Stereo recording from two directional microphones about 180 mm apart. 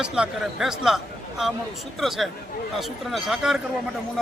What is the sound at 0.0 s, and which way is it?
Speech, 5° right (ahead or behind).